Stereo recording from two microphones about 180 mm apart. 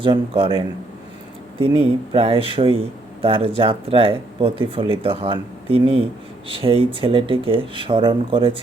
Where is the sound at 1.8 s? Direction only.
30° right (ahead or behind).